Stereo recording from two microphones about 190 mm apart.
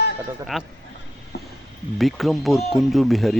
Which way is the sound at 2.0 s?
Centre (ahead or behind).